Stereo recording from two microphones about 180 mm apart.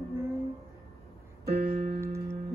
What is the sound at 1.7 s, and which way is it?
Keyboard, 50° right (ahead or behind).